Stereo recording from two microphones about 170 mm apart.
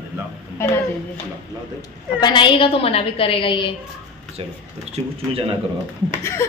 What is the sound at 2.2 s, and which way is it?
A woman's voice, 25° left (ahead or behind).